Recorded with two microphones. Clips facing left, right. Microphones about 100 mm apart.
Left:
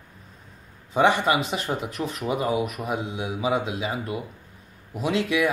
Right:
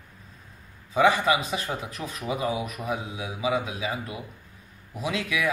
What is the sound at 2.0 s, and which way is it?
Speech, 40° left (ahead or behind).